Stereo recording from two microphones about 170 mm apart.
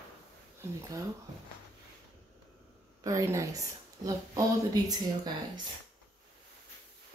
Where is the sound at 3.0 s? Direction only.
20° right (ahead or behind).